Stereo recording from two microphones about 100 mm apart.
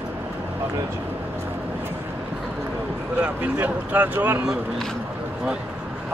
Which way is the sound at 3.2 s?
15° right (ahead or behind).